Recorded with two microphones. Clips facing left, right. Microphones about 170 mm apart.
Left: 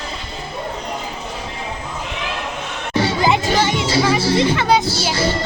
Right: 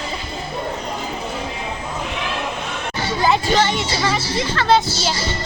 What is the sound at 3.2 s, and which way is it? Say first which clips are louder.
Speech: right 3 dB; 15° left (ahead or behind).